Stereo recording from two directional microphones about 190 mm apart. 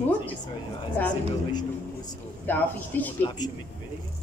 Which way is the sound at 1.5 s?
20° left (ahead or behind).